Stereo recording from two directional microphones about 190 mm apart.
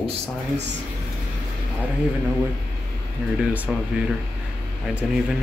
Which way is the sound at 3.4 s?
10° right (ahead or behind).